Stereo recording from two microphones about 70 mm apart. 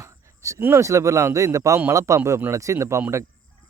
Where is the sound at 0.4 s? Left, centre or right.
Right.